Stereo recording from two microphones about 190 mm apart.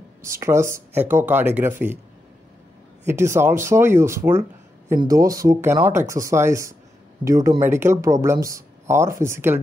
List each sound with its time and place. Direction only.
0.2 s speech: 15° right (ahead or behind)
3.1 s speech: 15° right (ahead or behind)